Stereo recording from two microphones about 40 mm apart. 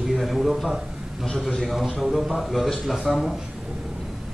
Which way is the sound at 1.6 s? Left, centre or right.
Centre.